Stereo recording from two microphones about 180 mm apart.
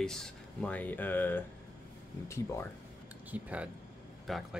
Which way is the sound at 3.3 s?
10° right (ahead or behind).